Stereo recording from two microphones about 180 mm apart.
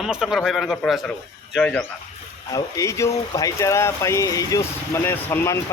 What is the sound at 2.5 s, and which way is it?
Speech, 20° left (ahead or behind).